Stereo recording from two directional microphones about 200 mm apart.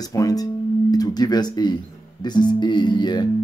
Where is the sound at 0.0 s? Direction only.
20° left (ahead or behind).